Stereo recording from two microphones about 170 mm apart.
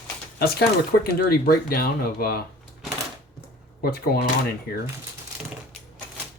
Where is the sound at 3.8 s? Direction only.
65° left (ahead or behind).